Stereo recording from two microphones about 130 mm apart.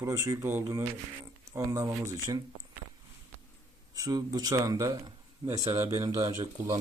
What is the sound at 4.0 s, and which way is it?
A man's voice, 30° right (ahead or behind).